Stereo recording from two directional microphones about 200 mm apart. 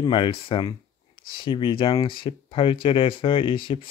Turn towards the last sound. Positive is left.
turn(degrees=25)  # may be behind; listen again after turning